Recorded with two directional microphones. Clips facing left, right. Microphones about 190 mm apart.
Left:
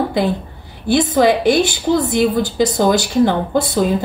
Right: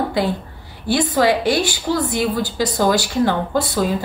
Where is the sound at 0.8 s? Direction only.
20° left (ahead or behind).